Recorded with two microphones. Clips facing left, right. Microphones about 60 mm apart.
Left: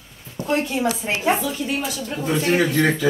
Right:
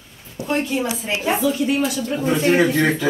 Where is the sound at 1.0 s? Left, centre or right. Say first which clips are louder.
Left 1 dB; left.